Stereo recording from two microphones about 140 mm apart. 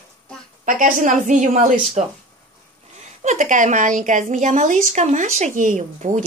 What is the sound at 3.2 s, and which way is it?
A woman's voice, 65° right (ahead or behind).